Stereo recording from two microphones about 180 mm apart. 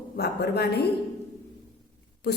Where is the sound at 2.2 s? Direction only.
65° left (ahead or behind).